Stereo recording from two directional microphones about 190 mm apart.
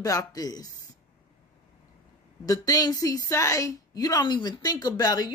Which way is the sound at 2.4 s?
20° left (ahead or behind).